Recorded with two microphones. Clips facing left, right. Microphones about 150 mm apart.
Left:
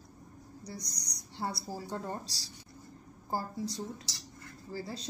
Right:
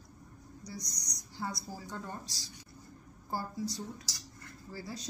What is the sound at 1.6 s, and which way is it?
Speech, 30° left (ahead or behind).